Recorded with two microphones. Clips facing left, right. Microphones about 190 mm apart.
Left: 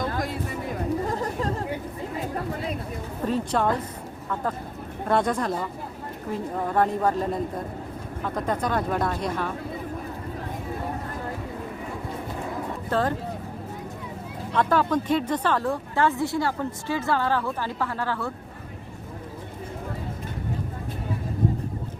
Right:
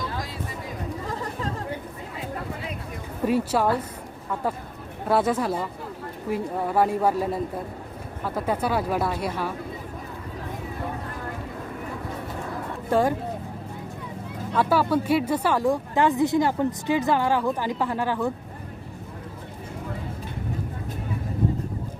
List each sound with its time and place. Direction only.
0.0 s a sound: 55° left (ahead or behind)
3.2 s speech: 10° right (ahead or behind)
5.0 s speech: 5° right (ahead or behind)
12.9 s speech: 10° right (ahead or behind)
14.5 s speech: 5° right (ahead or behind)